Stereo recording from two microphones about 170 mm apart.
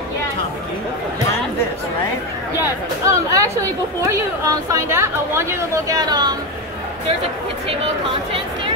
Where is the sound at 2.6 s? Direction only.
20° right (ahead or behind).